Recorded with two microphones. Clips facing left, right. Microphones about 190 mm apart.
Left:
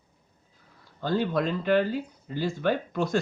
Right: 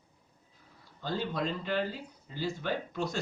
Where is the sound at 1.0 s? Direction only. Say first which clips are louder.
Left 7 dB; 60° left (ahead or behind).